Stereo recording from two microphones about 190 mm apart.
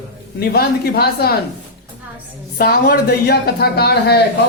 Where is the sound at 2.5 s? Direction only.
55° left (ahead or behind).